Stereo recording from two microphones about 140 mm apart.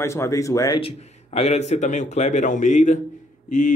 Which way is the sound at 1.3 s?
50° left (ahead or behind).